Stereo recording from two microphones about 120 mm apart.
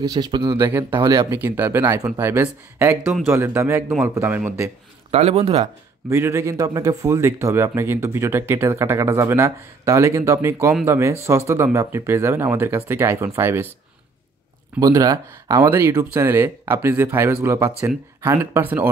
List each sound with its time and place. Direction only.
0.0 s speech: 35° right (ahead or behind)
0.6 s speech: 20° right (ahead or behind)
5.1 s speech: 60° right (ahead or behind)
6.0 s speech: 20° right (ahead or behind)
14.8 s speech: 35° right (ahead or behind); by 18.9 s 15° right (ahead or behind)